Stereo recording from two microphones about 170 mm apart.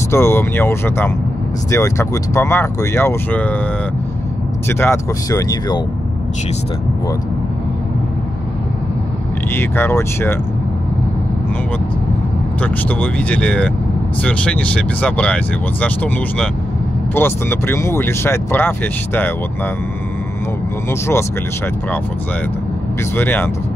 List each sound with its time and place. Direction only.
0.1 s speech: 15° left (ahead or behind)
4.6 s speech: 15° left (ahead or behind)
9.5 s speech: 15° left (ahead or behind)
12.6 s speech: 10° left (ahead or behind)
23.1 s speech: 10° left (ahead or behind)